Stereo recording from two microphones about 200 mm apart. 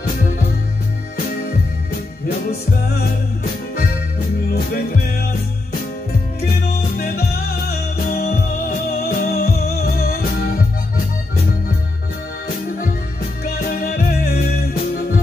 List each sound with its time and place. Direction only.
7.0 s music: 50° left (ahead or behind)
13.5 s music: 45° left (ahead or behind)